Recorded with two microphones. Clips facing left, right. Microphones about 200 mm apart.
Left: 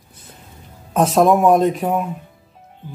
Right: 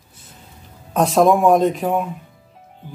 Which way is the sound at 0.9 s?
Centre (ahead or behind).